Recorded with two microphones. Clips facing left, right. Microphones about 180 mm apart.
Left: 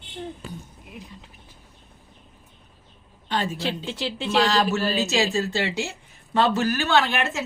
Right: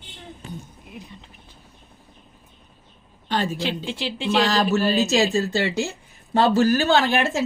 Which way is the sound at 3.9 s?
30° right (ahead or behind).